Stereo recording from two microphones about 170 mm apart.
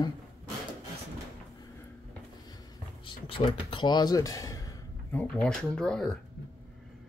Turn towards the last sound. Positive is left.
turn(degrees=5)  # may be behind; listen again after turning